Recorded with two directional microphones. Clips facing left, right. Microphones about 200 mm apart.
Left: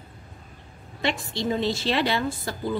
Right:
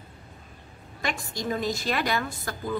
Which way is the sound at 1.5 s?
25° left (ahead or behind).